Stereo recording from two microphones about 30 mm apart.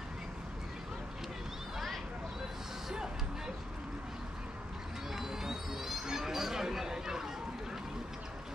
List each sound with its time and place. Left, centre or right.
2.9 s music: centre
5.1 s music: centre